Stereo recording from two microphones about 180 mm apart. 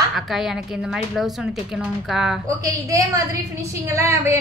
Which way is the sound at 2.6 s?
20° right (ahead or behind).